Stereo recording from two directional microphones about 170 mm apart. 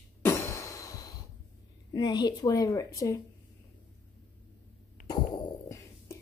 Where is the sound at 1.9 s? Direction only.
25° left (ahead or behind).